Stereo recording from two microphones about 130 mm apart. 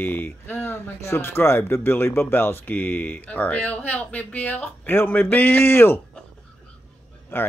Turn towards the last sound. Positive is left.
turn(degrees=15)  # may be behind; listen again after turning